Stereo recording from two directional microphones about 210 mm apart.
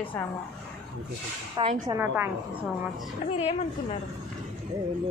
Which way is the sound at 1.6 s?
20° right (ahead or behind).